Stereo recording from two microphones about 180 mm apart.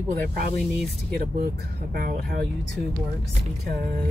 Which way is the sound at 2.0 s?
55° right (ahead or behind).